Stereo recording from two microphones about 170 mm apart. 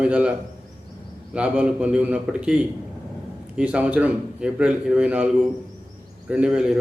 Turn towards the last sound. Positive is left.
turn(degrees=-5)  # may be behind; listen again after turning